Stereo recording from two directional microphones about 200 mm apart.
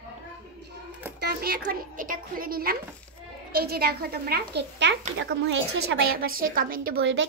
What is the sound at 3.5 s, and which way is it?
A woman's voice, 50° right (ahead or behind).